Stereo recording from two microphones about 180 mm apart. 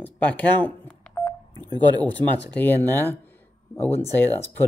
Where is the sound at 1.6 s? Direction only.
25° right (ahead or behind).